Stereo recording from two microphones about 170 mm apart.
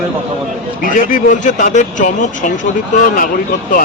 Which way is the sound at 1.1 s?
50° left (ahead or behind).